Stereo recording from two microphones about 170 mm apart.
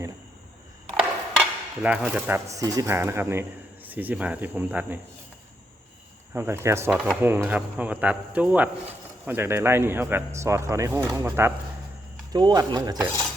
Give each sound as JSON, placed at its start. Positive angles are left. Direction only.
{"t": 1.4, "sound": "speech", "side_deg": -5}
{"t": 6.3, "sound": "speech", "side_deg": -15}
{"t": 12.3, "sound": "cutlery", "side_deg": -25}